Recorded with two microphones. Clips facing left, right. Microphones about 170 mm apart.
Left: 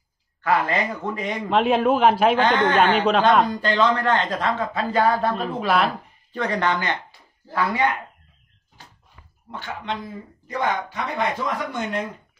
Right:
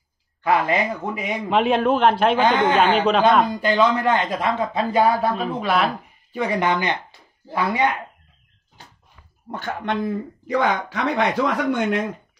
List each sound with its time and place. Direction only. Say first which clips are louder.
0.4 s a man's voice: right 2 dB; 15° right (ahead or behind); by 2.3 s 5° left (ahead or behind)
2.3 s a man's voice: right 1 dB; 10° right (ahead or behind)
6.3 s speech: right 2 dB; 10° right (ahead or behind)
9.5 s speech: right 4 dB; 50° right (ahead or behind)
10.4 s speech: right 3 dB; 90° right; by 11.8 s 70° right (ahead or behind)